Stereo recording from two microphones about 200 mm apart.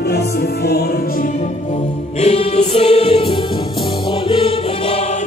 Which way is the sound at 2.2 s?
35° left (ahead or behind).